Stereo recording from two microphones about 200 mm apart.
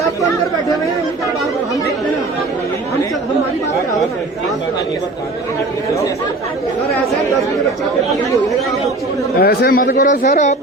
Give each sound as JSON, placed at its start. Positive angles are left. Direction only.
{"t": 9.4, "sound": "speech", "side_deg": 50}